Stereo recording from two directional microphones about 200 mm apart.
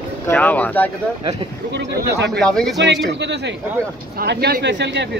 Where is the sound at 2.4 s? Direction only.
5° left (ahead or behind).